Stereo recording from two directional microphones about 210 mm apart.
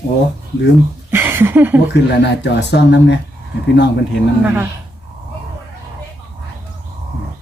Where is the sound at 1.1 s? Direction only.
10° right (ahead or behind).